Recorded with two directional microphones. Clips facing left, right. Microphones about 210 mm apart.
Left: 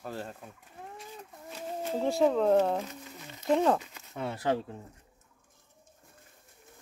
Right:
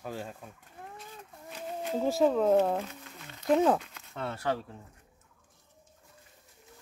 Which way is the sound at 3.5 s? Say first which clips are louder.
Right 1 dB; 5° right (ahead or behind).